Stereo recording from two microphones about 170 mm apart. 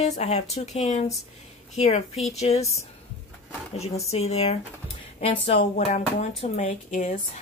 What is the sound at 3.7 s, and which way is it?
Speech, 40° left (ahead or behind).